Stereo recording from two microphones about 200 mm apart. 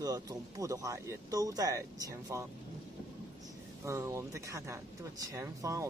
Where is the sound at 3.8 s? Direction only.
15° right (ahead or behind).